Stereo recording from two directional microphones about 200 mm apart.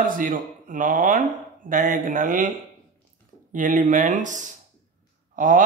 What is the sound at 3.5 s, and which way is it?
Speech, 40° right (ahead or behind).